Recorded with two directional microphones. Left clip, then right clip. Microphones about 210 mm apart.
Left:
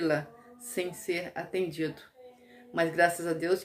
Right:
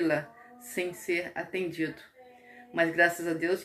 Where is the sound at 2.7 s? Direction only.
15° left (ahead or behind).